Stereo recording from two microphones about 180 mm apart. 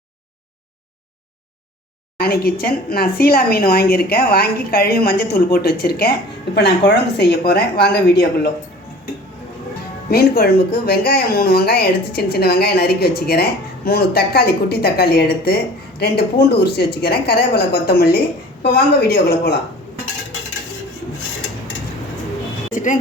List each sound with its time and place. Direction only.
2.1 s a woman's voice: 60° left (ahead or behind)
10.1 s a woman's voice: 60° left (ahead or behind)
22.7 s a sound: 45° left (ahead or behind)